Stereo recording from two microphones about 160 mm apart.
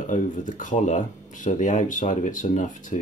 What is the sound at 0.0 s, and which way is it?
Speech, 50° left (ahead or behind).